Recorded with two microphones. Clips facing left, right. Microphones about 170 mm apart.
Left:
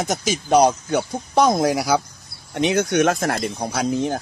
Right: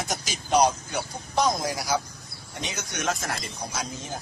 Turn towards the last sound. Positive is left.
turn(degrees=70)  # may be behind; listen again after turning